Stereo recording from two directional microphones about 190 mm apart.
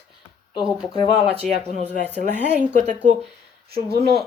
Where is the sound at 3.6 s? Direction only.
55° right (ahead or behind).